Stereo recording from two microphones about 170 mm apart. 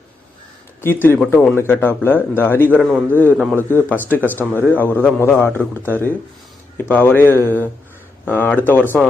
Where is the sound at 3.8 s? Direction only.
10° left (ahead or behind).